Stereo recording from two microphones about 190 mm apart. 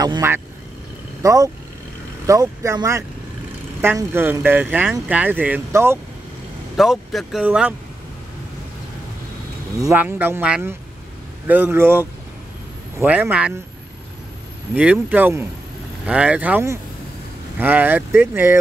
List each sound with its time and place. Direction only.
0.0 s speech: 15° right (ahead or behind)
6.8 s speech: centre (ahead or behind)
9.8 s speech: 5° right (ahead or behind)
14.8 s speech: 5° right (ahead or behind)